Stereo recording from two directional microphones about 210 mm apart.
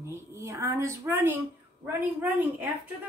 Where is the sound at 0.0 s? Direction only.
15° right (ahead or behind).